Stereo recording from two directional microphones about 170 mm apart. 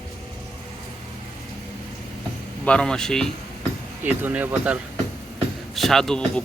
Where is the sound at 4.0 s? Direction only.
10° right (ahead or behind).